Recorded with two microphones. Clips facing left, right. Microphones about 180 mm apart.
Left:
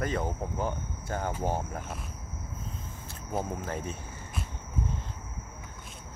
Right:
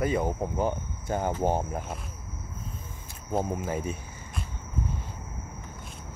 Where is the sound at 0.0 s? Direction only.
10° right (ahead or behind).